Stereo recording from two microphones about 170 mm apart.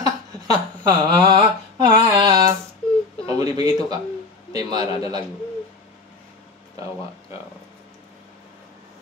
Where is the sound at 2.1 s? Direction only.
25° right (ahead or behind).